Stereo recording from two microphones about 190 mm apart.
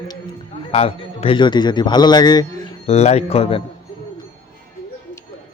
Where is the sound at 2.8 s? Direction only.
35° left (ahead or behind).